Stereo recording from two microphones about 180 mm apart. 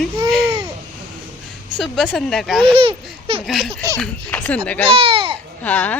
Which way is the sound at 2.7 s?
30° right (ahead or behind).